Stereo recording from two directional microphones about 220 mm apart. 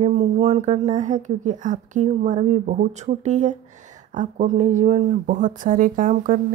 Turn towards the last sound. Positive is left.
turn(degrees=-35)  # may be behind; listen again after turning